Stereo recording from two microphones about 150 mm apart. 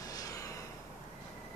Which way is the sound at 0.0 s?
25° left (ahead or behind).